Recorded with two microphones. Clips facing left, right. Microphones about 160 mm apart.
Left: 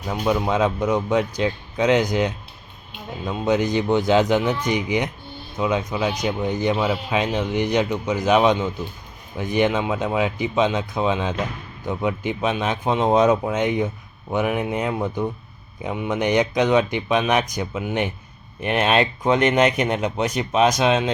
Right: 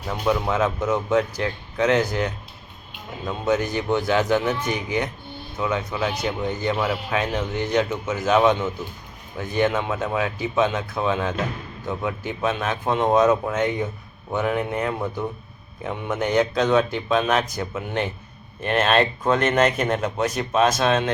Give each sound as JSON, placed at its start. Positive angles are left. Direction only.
{"t": 0.1, "sound": "speech", "side_deg": 20}